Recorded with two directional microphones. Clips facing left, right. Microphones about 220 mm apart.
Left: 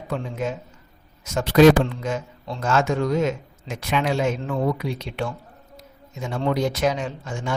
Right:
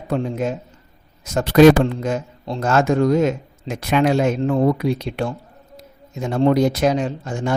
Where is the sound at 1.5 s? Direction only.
45° right (ahead or behind).